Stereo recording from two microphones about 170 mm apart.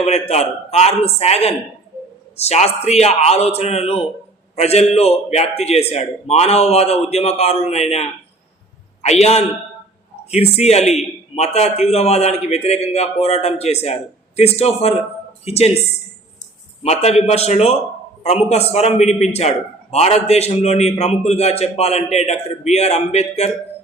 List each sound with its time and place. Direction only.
0.0 s a man's voice: 40° left (ahead or behind)
16.8 s a man's voice: 40° left (ahead or behind)